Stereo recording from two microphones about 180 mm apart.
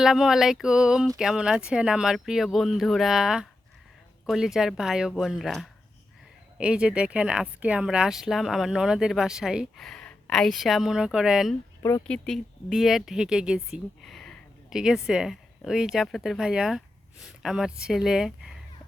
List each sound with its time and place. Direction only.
0.0 s speech: 5° right (ahead or behind)
11.8 s speech: 15° left (ahead or behind)
12.0 s speech: 5° left (ahead or behind)